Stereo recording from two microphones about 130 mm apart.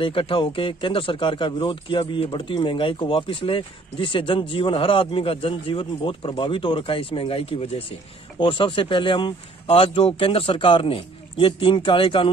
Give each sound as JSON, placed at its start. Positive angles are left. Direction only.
{"t": 0.0, "sound": "speech", "side_deg": 40}